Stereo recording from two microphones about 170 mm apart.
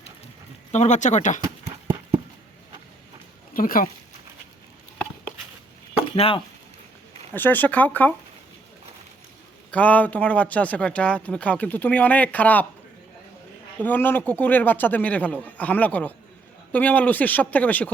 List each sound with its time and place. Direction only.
0.7 s speech: 45° left (ahead or behind)
3.5 s speech: 55° left (ahead or behind)
6.1 s speech: 35° left (ahead or behind)
7.3 s a man's voice: 10° left (ahead or behind)
9.7 s a man's voice: 10° left (ahead or behind)
13.7 s a man's voice: 10° left (ahead or behind)